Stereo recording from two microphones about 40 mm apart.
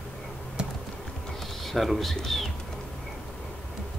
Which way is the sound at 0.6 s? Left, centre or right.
Right.